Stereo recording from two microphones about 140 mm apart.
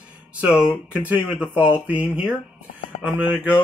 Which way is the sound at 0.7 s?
10° right (ahead or behind).